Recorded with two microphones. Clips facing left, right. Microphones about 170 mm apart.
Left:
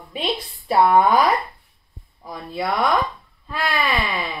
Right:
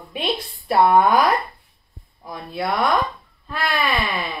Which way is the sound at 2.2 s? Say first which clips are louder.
Even; centre (ahead or behind).